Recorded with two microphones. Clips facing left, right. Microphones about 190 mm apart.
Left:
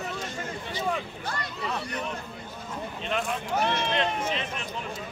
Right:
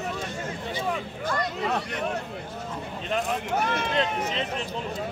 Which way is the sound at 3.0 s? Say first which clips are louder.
Right 3 dB; 40° right (ahead or behind).